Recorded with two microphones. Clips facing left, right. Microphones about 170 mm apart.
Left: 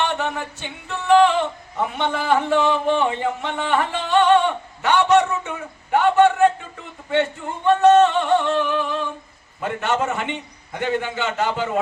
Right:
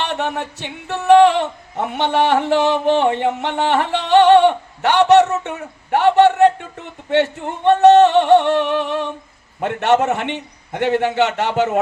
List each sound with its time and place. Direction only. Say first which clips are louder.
0.0 s music: right 1 dB; 70° right (ahead or behind)